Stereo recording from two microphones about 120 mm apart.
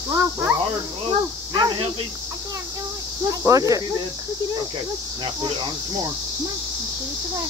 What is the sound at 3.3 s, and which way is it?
Speech, 30° right (ahead or behind).